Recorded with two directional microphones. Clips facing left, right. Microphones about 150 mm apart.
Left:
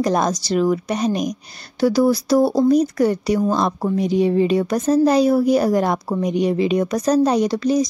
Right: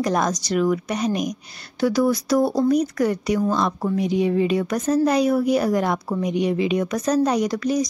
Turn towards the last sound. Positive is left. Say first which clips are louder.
# left 4 dB
turn(degrees=30)  # may be behind; listen again after turning